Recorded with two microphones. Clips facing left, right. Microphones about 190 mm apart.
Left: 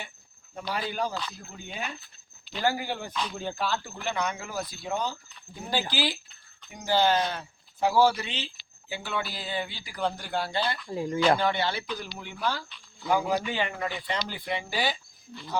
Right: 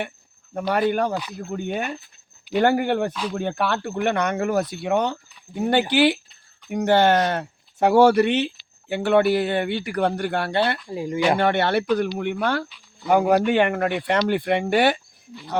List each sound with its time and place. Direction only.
0.5 s speech: 65° right (ahead or behind)
3.1 s speech: 5° right (ahead or behind)
3.3 s speech: 65° right (ahead or behind)
10.8 s speech: 15° right (ahead or behind)
11.3 s speech: 65° right (ahead or behind)